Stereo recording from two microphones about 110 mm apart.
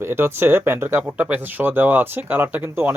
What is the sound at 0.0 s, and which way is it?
Speech, 20° right (ahead or behind).